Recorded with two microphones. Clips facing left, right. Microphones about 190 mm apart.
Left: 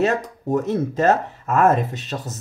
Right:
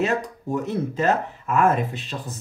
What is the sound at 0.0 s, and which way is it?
Speech, 45° left (ahead or behind).